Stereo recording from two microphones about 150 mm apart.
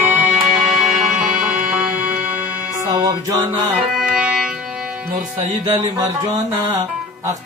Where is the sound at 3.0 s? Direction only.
25° right (ahead or behind).